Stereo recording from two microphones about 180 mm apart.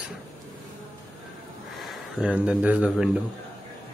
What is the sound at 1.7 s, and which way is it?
Speech, centre (ahead or behind).